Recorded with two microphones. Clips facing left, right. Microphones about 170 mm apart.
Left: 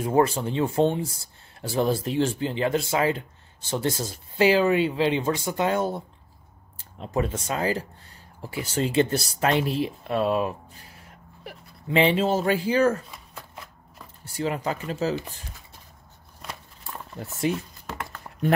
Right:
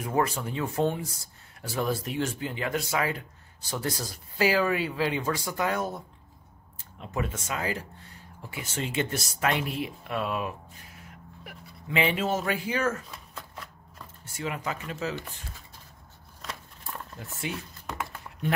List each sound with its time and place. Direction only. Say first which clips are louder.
0.0 s speech: left 6 dB; 30° left (ahead or behind)
14.2 s speech: left 6 dB; 35° left (ahead or behind)
17.2 s speech: left 10 dB; 40° left (ahead or behind)